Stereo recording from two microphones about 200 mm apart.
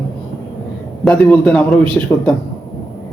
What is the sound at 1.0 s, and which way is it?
Speech, 5° left (ahead or behind).